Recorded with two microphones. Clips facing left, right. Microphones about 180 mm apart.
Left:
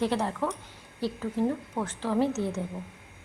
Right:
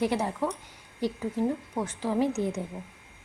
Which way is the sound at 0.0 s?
10° right (ahead or behind).